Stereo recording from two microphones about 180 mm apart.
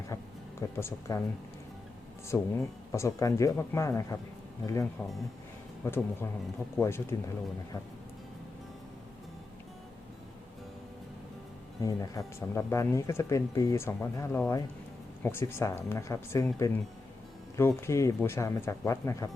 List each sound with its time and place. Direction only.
0.8 s speech: 15° left (ahead or behind)
2.2 s speech: 15° left (ahead or behind)
11.8 s speech: 20° left (ahead or behind)